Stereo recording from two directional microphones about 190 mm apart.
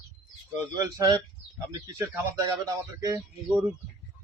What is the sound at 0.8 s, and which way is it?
Speech, 15° right (ahead or behind).